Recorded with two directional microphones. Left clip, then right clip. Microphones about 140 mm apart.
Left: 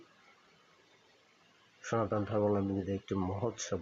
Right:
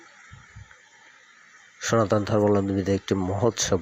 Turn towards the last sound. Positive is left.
turn(degrees=-55)  # may be behind; listen again after turning